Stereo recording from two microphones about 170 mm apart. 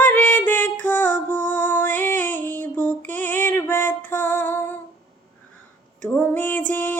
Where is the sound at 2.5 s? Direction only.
10° left (ahead or behind).